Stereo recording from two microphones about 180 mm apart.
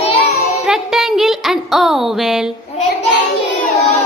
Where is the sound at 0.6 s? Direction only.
Centre (ahead or behind).